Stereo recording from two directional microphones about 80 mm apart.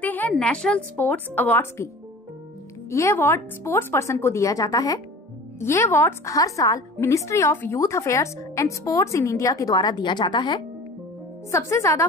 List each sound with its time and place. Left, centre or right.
0.0 s a woman's voice: left
2.9 s a woman's voice: left
5.6 s a woman's voice: left
9.5 s a woman's voice: left
11.5 s a woman's voice: left